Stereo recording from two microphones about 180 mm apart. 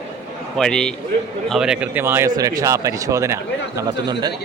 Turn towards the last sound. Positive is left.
turn(degrees=-20)  # may be behind; listen again after turning